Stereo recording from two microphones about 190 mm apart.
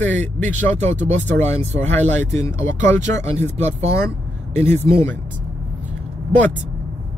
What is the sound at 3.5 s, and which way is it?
Speech, 35° right (ahead or behind).